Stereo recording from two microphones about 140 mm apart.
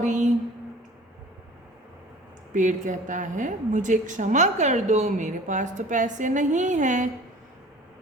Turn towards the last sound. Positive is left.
turn(degrees=-60)  # may be behind; listen again after turning